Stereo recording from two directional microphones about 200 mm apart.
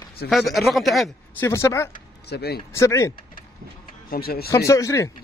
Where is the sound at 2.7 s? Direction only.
15° left (ahead or behind).